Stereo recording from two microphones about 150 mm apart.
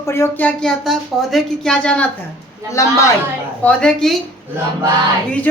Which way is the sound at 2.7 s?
20° left (ahead or behind).